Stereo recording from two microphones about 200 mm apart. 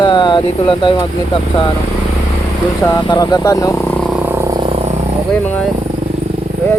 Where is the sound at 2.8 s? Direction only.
15° left (ahead or behind).